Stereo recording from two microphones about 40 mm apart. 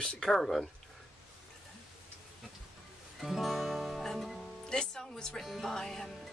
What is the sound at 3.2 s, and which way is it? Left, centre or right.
Music, centre.